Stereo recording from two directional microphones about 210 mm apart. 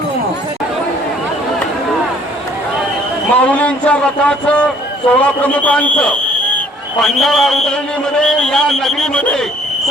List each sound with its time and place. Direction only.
3.3 s a man's voice: 5° left (ahead or behind)